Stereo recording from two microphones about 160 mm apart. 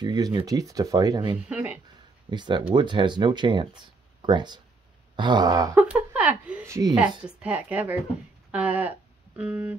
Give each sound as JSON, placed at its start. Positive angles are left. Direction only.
{"t": 0.0, "sound": "speech", "side_deg": -25}
{"t": 1.5, "sound": "speech", "side_deg": -10}
{"t": 2.3, "sound": "speech", "side_deg": -30}
{"t": 5.8, "sound": "a sound", "side_deg": -10}
{"t": 6.7, "sound": "speech", "side_deg": -20}
{"t": 7.2, "sound": "a woman's voice", "side_deg": -10}